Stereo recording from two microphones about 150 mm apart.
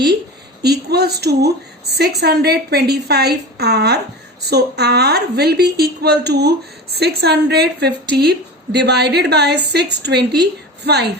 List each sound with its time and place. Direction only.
0.6 s a woman's voice: 90° right